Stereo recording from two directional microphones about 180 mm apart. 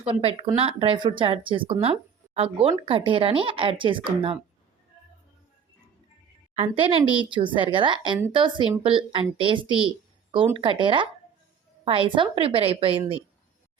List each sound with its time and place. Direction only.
0.0 s speech: 30° right (ahead or behind)
6.5 s a woman's voice: 30° right (ahead or behind)